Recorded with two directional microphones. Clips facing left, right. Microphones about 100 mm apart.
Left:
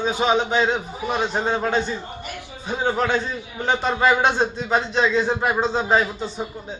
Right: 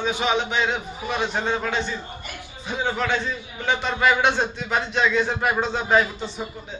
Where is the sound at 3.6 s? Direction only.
35° left (ahead or behind).